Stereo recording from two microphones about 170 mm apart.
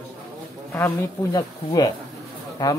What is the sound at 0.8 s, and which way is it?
Speech, 15° left (ahead or behind).